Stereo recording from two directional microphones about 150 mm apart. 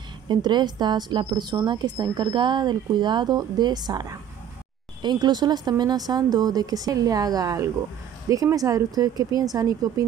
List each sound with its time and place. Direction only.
0.3 s a woman's voice: 30° right (ahead or behind)